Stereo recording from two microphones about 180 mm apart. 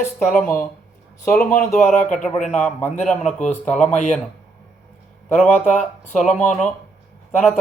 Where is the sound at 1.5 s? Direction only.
45° left (ahead or behind).